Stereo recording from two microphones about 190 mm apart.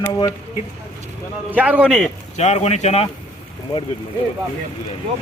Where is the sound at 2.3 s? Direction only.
35° left (ahead or behind).